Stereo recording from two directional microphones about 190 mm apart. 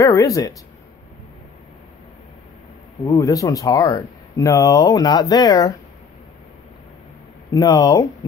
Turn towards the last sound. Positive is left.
turn(degrees=15)  # may be behind; listen again after turning